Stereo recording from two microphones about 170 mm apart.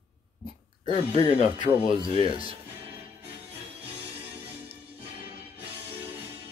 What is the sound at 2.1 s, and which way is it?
Speech, 35° right (ahead or behind).